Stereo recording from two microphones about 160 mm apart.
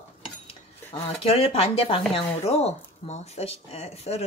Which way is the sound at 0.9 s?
40° left (ahead or behind).